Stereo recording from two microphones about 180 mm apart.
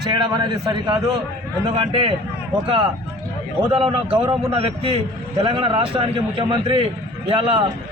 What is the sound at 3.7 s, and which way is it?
A man's voice, 30° right (ahead or behind).